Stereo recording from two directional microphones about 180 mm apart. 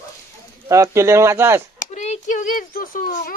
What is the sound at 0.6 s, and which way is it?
Speech, 15° right (ahead or behind).